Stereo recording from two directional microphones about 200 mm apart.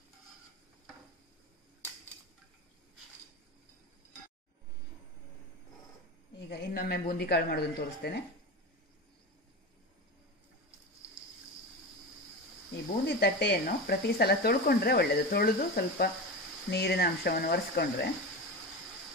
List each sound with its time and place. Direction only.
6.5 s speech: 55° left (ahead or behind)
13.0 s speech: 55° left (ahead or behind)